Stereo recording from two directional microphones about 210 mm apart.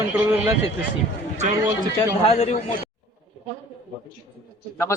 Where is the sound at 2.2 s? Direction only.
30° left (ahead or behind).